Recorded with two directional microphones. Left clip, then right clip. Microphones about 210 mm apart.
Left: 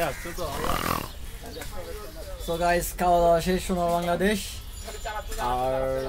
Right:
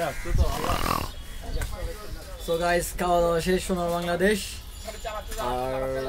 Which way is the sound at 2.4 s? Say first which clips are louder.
Even; centre (ahead or behind).